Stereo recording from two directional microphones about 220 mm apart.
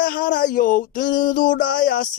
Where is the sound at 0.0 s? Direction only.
40° left (ahead or behind).